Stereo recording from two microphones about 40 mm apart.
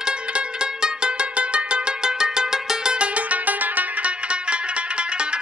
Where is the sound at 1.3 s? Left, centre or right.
Right.